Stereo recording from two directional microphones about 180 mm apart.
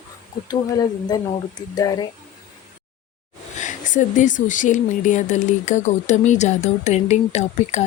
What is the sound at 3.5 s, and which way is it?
Speech, 45° left (ahead or behind).